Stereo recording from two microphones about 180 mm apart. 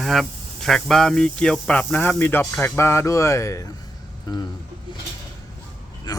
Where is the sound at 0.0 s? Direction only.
Centre (ahead or behind); by 3.6 s 15° left (ahead or behind).